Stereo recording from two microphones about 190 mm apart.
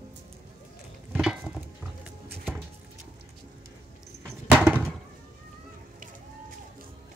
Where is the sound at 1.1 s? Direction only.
5° right (ahead or behind).